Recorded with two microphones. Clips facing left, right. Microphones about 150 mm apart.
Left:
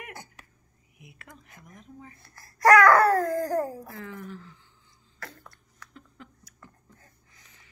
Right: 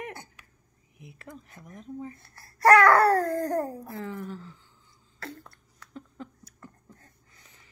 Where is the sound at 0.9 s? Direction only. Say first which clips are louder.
Right 6 dB; 35° right (ahead or behind).